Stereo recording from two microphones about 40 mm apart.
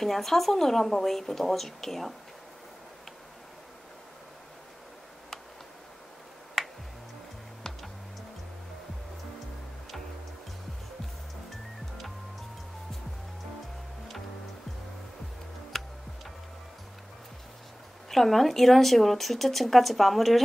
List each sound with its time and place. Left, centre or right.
0.0 s speech: centre
6.6 s finger snapping: centre
7.7 s music: centre
15.7 s tick-tock: centre
18.1 s speech: centre